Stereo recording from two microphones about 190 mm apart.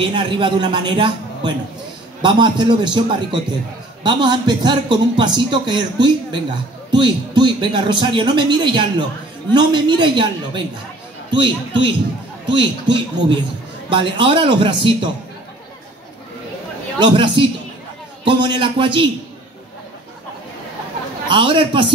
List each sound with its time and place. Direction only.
0.0 s a man's voice: 25° right (ahead or behind)
17.0 s a man's voice: 25° right (ahead or behind)
21.3 s a man's voice: 25° right (ahead or behind)